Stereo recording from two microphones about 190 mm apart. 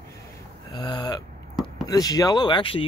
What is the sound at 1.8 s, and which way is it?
Speech, 20° left (ahead or behind).